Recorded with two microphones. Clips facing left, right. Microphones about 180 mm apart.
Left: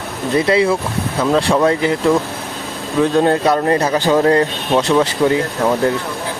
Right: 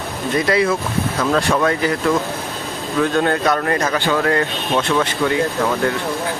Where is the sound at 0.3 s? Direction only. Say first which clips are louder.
Left 3 dB; 25° left (ahead or behind).